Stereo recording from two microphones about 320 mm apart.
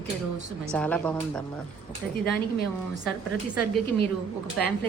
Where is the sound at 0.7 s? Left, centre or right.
Centre.